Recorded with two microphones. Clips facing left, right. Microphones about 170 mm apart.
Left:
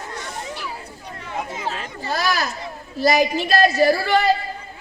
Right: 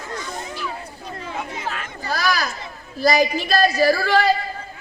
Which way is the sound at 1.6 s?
30° left (ahead or behind).